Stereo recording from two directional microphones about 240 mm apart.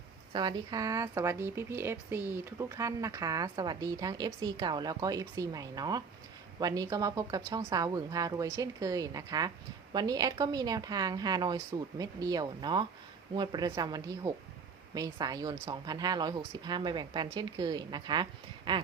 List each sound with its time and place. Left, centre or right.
0.3 s speech: centre